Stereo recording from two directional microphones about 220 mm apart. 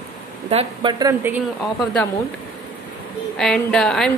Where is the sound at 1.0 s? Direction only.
10° right (ahead or behind).